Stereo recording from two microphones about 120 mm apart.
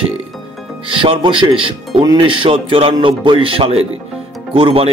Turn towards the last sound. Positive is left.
turn(degrees=-50)  # may be behind; listen again after turning